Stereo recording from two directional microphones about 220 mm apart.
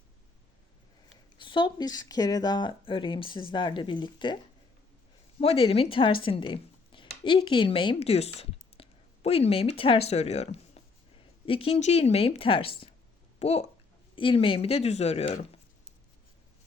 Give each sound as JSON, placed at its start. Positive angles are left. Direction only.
{"t": 1.4, "sound": "speech", "side_deg": 20}
{"t": 5.4, "sound": "speech", "side_deg": 25}
{"t": 6.2, "sound": "a sound", "side_deg": 20}
{"t": 7.3, "sound": "speech", "side_deg": 20}